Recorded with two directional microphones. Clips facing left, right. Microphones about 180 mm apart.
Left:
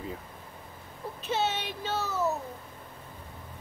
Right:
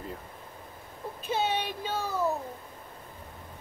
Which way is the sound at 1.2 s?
10° right (ahead or behind).